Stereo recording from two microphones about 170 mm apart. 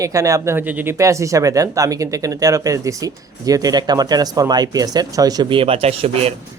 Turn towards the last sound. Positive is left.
turn(degrees=-35)  # may be behind; listen again after turning